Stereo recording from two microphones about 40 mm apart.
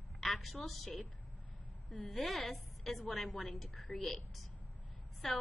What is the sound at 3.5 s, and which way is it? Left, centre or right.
A woman's voice, centre.